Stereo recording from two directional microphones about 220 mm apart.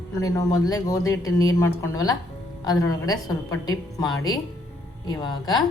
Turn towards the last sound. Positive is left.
turn(degrees=20)  # may be behind; listen again after turning